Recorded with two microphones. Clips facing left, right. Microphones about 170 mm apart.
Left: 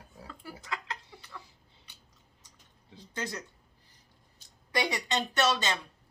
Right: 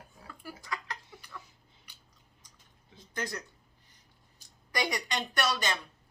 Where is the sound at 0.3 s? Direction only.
20° left (ahead or behind).